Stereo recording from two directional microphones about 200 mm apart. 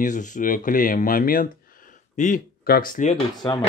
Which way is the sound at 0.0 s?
40° left (ahead or behind).